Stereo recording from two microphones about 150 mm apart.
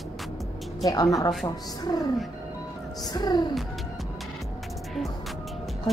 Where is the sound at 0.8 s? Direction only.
25° left (ahead or behind).